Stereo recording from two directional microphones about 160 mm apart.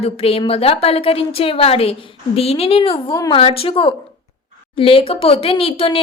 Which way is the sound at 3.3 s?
35° left (ahead or behind).